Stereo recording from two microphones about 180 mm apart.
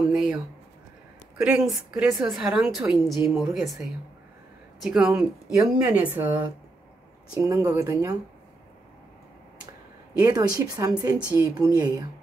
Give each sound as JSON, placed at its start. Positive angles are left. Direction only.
{"t": 0.1, "sound": "a sound", "side_deg": -5}
{"t": 1.4, "sound": "speech", "side_deg": -5}
{"t": 4.7, "sound": "speech", "side_deg": -5}
{"t": 10.1, "sound": "a woman's voice", "side_deg": -20}